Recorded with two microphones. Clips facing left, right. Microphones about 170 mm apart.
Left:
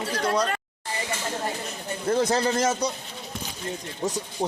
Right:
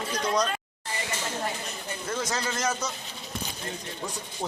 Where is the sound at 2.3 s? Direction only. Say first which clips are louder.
Left 7 dB; 35° left (ahead or behind).